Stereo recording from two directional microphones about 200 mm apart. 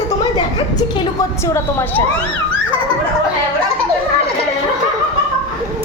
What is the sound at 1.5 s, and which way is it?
Speech, 10° left (ahead or behind).